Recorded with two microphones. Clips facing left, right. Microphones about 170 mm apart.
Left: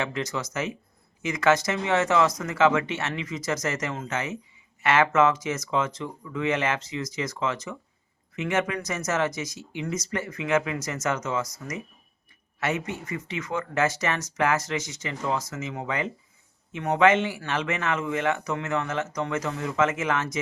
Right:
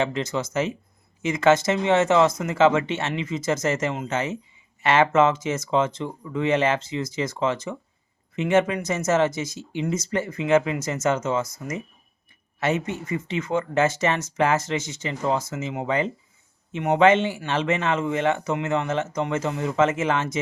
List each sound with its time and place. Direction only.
0.0 s a man's voice: 25° right (ahead or behind)